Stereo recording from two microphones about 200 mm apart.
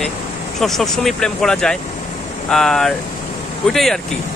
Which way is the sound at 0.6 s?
Centre (ahead or behind).